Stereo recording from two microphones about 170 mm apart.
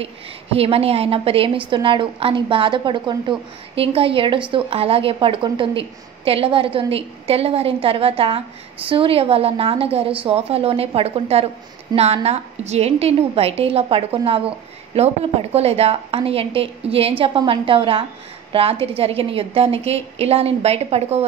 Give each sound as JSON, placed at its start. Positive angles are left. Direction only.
{"t": 0.6, "sound": "a woman's voice", "side_deg": -35}
{"t": 15.5, "sound": "a woman's voice", "side_deg": -35}